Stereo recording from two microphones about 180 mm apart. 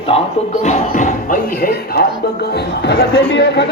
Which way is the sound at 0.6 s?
40° left (ahead or behind).